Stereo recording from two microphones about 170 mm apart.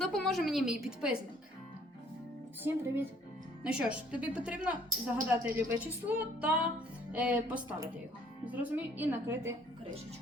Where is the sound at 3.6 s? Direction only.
5° right (ahead or behind).